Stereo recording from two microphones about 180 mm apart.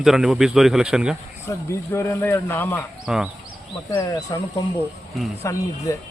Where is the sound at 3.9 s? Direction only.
20° left (ahead or behind).